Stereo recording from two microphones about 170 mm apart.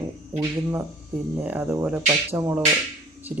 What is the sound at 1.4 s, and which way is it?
Speech, 10° right (ahead or behind).